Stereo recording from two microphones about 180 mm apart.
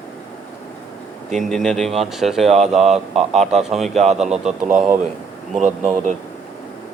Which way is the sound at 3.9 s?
40° right (ahead or behind).